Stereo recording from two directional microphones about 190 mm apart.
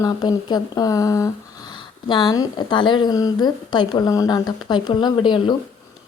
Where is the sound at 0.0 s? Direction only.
20° left (ahead or behind).